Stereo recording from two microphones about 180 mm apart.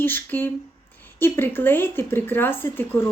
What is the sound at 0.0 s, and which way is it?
Speech, 10° left (ahead or behind).